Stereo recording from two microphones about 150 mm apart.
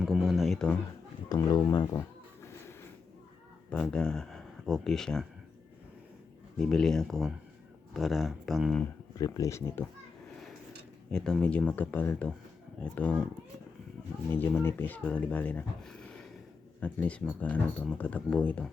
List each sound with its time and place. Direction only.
0.0 s speech: centre (ahead or behind)
1.3 s speech: 25° left (ahead or behind)
2.0 s cat: 15° left (ahead or behind)
3.7 s speech: 5° left (ahead or behind)
6.6 s speech: 5° left (ahead or behind)
9.1 s speech: 25° left (ahead or behind)
11.1 s speech: 5° left (ahead or behind)
14.3 s speech: 15° left (ahead or behind)